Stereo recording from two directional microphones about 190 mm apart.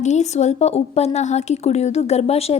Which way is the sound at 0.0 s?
35° left (ahead or behind).